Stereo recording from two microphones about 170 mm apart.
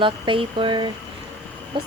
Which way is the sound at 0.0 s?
30° right (ahead or behind).